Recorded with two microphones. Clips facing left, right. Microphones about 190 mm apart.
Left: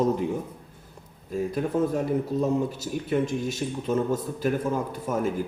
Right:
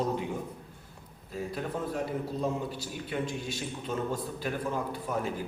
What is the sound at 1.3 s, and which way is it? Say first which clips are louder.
A man's voice: left 8 dB; 45° left (ahead or behind).